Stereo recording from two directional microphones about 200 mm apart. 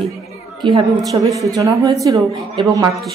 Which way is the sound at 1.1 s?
15° right (ahead or behind).